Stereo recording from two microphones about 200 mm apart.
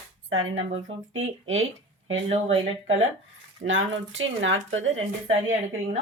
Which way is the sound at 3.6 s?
70° right (ahead or behind).